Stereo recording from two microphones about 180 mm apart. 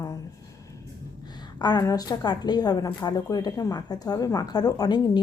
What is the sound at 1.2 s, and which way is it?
A woman's voice, 25° left (ahead or behind).